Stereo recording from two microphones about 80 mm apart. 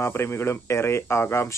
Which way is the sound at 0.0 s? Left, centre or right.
Left.